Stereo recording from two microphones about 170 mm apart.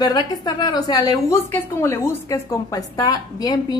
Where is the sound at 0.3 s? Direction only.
20° left (ahead or behind).